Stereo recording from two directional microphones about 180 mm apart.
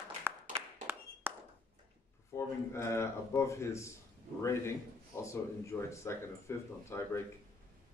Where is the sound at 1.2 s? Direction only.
10° right (ahead or behind).